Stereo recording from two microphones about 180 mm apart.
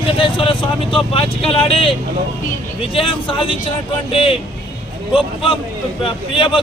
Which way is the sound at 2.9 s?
30° left (ahead or behind).